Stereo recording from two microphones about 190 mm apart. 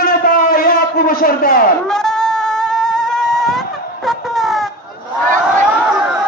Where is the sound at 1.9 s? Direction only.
5° left (ahead or behind).